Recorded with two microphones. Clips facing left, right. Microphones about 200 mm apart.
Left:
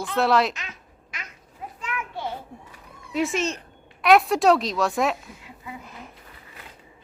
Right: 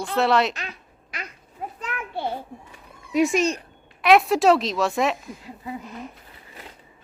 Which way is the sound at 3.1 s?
15° right (ahead or behind).